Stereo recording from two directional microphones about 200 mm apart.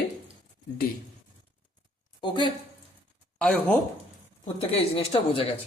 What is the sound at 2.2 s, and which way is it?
Speech, 25° left (ahead or behind).